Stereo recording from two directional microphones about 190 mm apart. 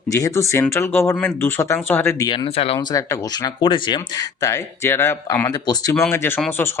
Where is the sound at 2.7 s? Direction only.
20° left (ahead or behind).